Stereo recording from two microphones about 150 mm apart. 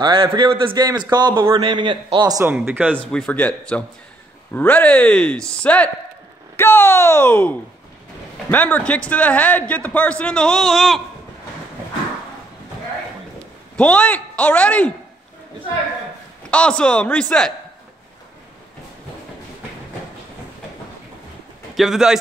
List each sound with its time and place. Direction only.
0.0 s a man's voice: 30° right (ahead or behind)
2.4 s speech: 10° right (ahead or behind)
3.1 s a man's voice: 5° left (ahead or behind)
13.7 s a man's voice: 10° left (ahead or behind)
16.4 s a man's voice: 5° left (ahead or behind)
21.7 s a man's voice: 5° right (ahead or behind)